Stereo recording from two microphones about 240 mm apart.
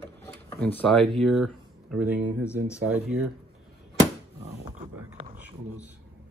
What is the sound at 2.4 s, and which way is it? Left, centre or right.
Speech, centre.